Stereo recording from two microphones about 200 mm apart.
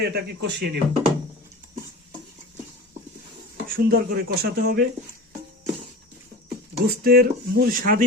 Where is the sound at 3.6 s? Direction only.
45° right (ahead or behind).